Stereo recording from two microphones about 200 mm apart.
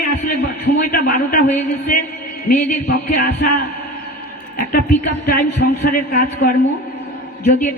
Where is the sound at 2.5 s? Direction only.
55° left (ahead or behind).